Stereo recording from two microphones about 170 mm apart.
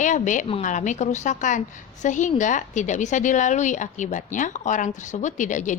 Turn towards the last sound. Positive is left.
turn(degrees=45)  # may be behind; listen again after turning